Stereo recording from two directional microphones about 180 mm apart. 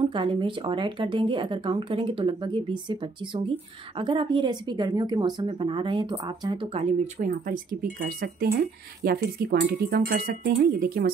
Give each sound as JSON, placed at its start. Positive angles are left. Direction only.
{"t": 0.0, "sound": "speech", "side_deg": -25}
{"t": 7.2, "sound": "speech", "side_deg": -50}